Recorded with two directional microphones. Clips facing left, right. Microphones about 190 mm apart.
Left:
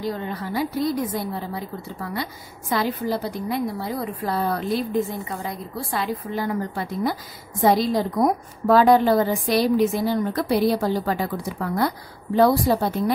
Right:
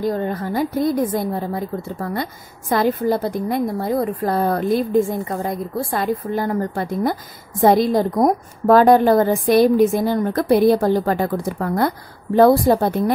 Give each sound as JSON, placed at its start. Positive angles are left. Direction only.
{"t": 0.0, "sound": "a woman's voice", "side_deg": -50}